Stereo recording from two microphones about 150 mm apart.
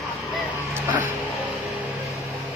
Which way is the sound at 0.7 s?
15° right (ahead or behind).